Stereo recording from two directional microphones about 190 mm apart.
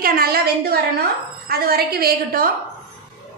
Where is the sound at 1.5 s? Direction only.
55° right (ahead or behind).